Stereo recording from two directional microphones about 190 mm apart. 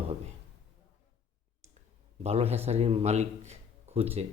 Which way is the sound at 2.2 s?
35° right (ahead or behind).